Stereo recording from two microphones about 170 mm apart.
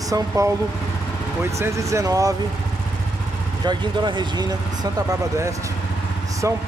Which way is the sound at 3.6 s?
25° right (ahead or behind).